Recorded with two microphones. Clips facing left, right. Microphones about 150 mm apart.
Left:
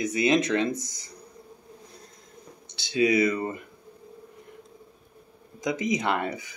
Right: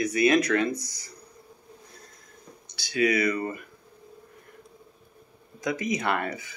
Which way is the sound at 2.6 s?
25° left (ahead or behind).